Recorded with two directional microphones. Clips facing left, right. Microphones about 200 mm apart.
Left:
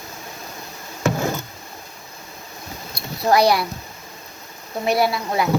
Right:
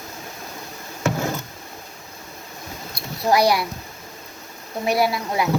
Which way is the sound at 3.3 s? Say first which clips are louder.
Left 2 dB; 15° right (ahead or behind).